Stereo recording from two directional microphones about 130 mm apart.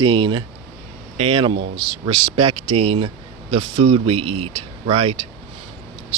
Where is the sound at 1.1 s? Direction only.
50° right (ahead or behind).